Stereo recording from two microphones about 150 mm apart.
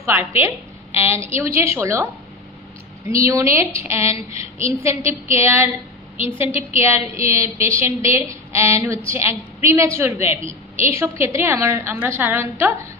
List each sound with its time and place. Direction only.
0.0 s a woman's voice: 15° right (ahead or behind)
3.1 s a woman's voice: 20° right (ahead or behind)
6.1 s a woman's voice: 40° left (ahead or behind)
6.7 s a woman's voice: 15° right (ahead or behind)